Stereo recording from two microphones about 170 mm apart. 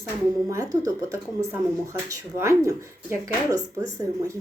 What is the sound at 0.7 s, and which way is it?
Speech, 20° right (ahead or behind).